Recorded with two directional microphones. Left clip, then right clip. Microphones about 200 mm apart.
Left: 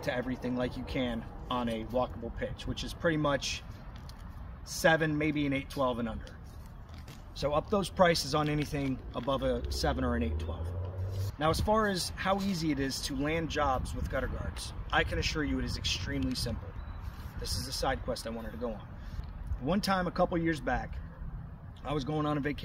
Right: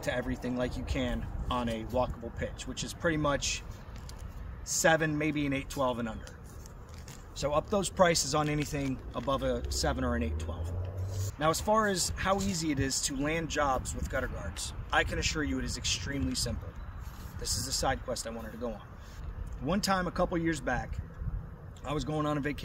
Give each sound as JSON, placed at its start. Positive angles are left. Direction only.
{"t": 0.0, "sound": "speech", "side_deg": 0}
{"t": 4.6, "sound": "a man's voice", "side_deg": -5}
{"t": 7.3, "sound": "a man's voice", "side_deg": -5}